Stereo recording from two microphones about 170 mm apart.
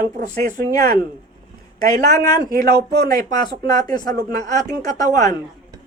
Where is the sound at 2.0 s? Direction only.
20° left (ahead or behind).